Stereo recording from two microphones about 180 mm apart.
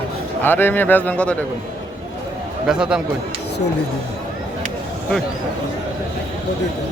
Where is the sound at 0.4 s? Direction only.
10° left (ahead or behind).